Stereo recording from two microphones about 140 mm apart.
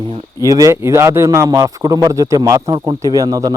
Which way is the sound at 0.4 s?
25° right (ahead or behind).